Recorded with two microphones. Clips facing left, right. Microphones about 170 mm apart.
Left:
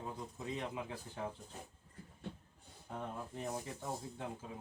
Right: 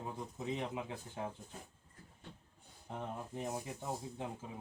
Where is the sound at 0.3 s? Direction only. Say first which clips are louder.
Right 3 dB; 20° right (ahead or behind).